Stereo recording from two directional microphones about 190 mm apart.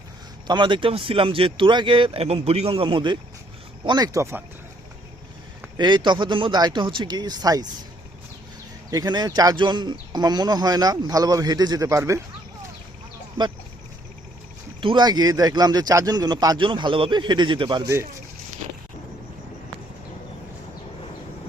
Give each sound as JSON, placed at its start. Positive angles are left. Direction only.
{"t": 0.4, "sound": "speech", "side_deg": -25}
{"t": 5.6, "sound": "speech", "side_deg": -20}
{"t": 8.9, "sound": "speech", "side_deg": -20}
{"t": 14.8, "sound": "speech", "side_deg": -25}